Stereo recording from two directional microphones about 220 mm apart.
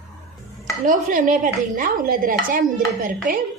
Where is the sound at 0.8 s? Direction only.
40° right (ahead or behind).